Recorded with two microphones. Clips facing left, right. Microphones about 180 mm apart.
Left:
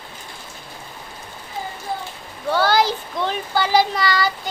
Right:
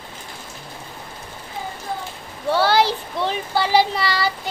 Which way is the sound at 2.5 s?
30° right (ahead or behind).